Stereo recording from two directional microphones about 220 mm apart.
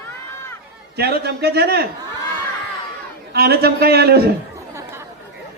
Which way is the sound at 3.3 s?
45° right (ahead or behind).